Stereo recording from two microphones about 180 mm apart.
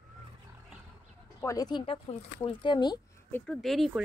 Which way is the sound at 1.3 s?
20° left (ahead or behind).